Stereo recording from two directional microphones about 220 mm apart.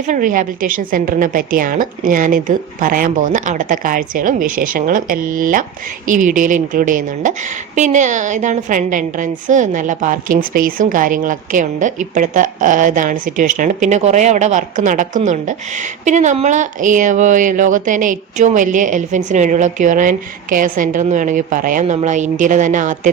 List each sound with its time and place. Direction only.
0.1 s a woman's voice: 40° right (ahead or behind)